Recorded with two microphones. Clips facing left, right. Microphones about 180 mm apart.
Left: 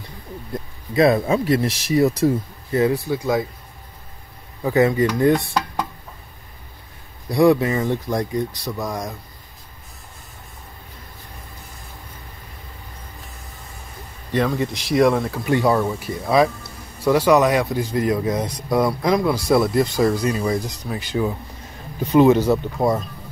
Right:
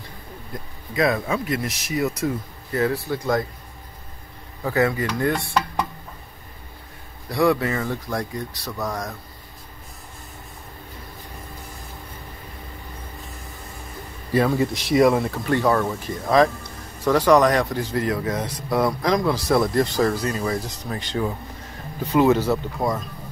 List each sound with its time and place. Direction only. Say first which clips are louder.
0.9 s speech: left 5 dB; 30° left (ahead or behind)
2.8 s speech: left 3 dB; 15° left (ahead or behind)
4.6 s speech: left 5 dB; 20° left (ahead or behind)
7.2 s speech: left 4 dB; 20° left (ahead or behind)
14.3 s speech: right 1 dB; 5° right (ahead or behind)
15.4 s speech: left 3 dB; 15° left (ahead or behind)